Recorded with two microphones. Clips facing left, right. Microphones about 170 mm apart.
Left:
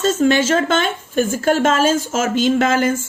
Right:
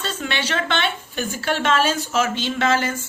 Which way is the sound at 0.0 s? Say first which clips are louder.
Left 12 dB; 40° left (ahead or behind).